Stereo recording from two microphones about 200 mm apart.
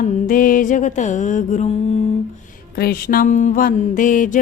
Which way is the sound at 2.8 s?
45° left (ahead or behind).